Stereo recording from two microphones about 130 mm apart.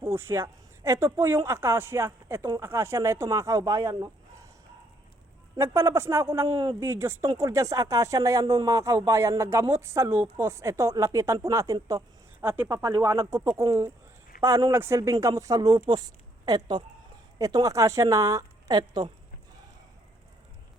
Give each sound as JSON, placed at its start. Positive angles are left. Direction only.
{"t": 0.0, "sound": "speech", "side_deg": -20}
{"t": 5.5, "sound": "speech", "side_deg": -20}
{"t": 12.4, "sound": "speech", "side_deg": -15}